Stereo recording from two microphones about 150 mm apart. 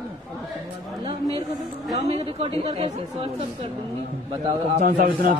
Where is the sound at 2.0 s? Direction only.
40° right (ahead or behind).